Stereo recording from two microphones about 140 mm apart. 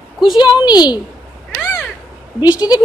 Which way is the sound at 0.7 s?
30° left (ahead or behind).